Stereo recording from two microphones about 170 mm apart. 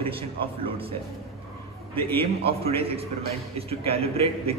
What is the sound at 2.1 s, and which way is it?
A man's voice, 35° right (ahead or behind).